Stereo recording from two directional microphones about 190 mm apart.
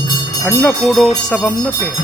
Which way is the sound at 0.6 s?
Centre (ahead or behind).